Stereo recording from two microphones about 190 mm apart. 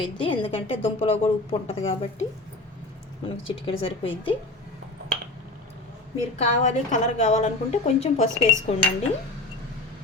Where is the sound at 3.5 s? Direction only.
30° left (ahead or behind).